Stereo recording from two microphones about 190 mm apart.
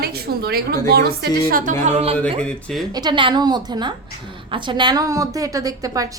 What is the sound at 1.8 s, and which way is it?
Speech, 30° right (ahead or behind).